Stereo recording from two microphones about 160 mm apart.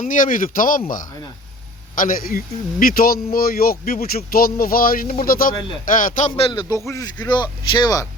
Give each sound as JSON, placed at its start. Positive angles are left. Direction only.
{"t": 0.0, "sound": "a man's voice", "side_deg": 55}
{"t": 2.0, "sound": "a man's voice", "side_deg": 60}
{"t": 6.3, "sound": "speech", "side_deg": 35}